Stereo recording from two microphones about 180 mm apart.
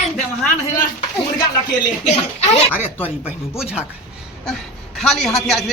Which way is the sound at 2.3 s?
35° left (ahead or behind).